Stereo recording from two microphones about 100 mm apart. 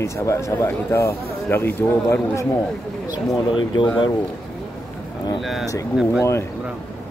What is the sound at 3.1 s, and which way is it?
Speech, 50° left (ahead or behind).